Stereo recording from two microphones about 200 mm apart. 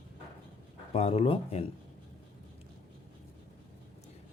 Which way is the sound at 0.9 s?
30° left (ahead or behind).